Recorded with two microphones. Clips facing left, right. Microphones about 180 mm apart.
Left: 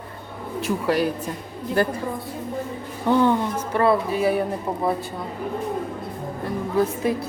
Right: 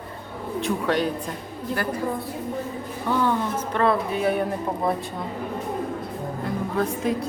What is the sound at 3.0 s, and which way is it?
Speech, 20° left (ahead or behind).